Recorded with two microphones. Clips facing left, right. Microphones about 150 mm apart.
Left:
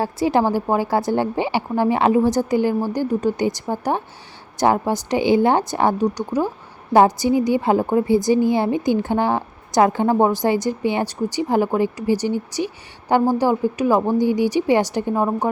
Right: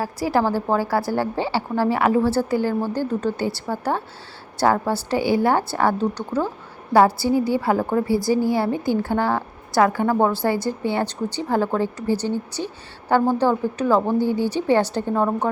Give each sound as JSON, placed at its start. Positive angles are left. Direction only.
{"t": 0.0, "sound": "a woman's voice", "side_deg": 20}